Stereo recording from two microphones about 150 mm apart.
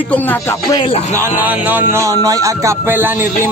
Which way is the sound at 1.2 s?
10° right (ahead or behind).